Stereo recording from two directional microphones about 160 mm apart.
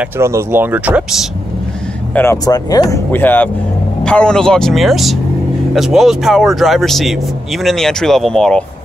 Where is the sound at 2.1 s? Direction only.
20° left (ahead or behind).